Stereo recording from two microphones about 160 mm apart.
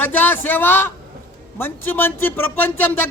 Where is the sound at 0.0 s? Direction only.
10° left (ahead or behind).